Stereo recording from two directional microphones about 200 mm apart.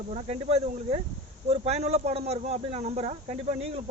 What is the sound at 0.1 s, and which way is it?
Speech, 30° right (ahead or behind).